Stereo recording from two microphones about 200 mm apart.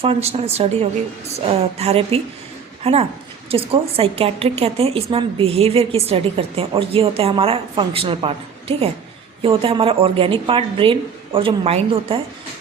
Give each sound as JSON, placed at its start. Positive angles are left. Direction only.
{"t": 0.0, "sound": "a woman's voice", "side_deg": -30}